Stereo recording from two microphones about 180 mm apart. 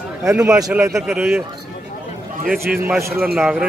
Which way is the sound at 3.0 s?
15° right (ahead or behind).